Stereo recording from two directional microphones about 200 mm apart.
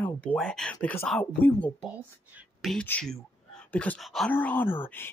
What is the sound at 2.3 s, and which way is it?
Speech, 5° right (ahead or behind).